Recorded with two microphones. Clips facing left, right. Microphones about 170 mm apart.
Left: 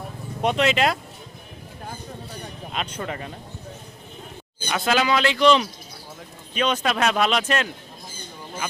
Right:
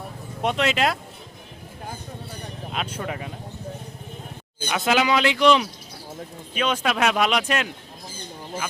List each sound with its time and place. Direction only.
0.4 s speech: centre (ahead or behind)
2.7 s speech: 5° right (ahead or behind)
4.7 s speech: 15° right (ahead or behind)